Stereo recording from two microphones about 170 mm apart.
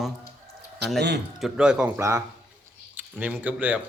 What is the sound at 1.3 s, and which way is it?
Speech, 5° right (ahead or behind).